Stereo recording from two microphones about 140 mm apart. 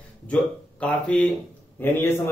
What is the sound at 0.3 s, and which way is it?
A man's voice, 10° left (ahead or behind).